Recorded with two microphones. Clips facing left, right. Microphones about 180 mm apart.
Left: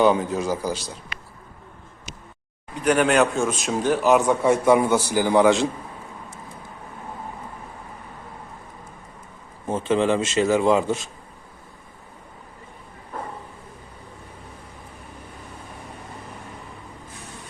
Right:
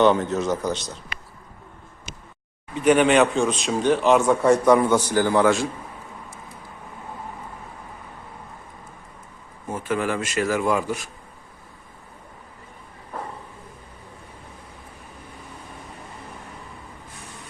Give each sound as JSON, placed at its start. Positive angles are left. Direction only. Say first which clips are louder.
{"t": 0.0, "sound": "a man's voice", "louder": "right 1 dB", "side_deg": 5}
{"t": 2.7, "sound": "a man's voice", "louder": "right 2 dB", "side_deg": 0}
{"t": 9.6, "sound": "a man's voice", "louder": "left 5 dB", "side_deg": 25}